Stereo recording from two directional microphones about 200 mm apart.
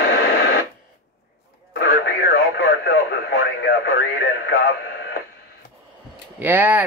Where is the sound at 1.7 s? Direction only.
55° left (ahead or behind).